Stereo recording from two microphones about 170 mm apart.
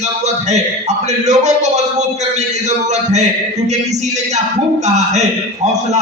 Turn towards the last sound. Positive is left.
turn(degrees=-40)  # may be behind; listen again after turning